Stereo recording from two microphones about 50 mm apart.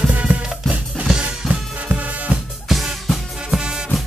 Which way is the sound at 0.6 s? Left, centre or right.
Centre.